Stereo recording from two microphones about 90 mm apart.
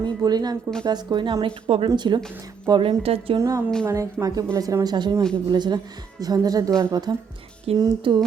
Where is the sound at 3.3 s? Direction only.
40° right (ahead or behind); by 8.2 s 55° right (ahead or behind).